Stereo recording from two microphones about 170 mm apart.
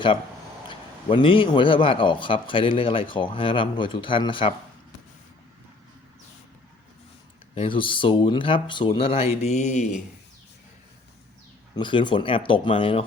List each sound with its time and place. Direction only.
0.7 s a man's voice: 30° left (ahead or behind)
7.5 s a man's voice: 30° left (ahead or behind)
11.8 s a man's voice: 30° left (ahead or behind)